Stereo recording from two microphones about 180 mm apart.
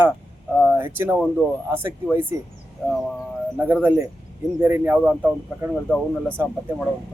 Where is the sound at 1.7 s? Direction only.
15° right (ahead or behind).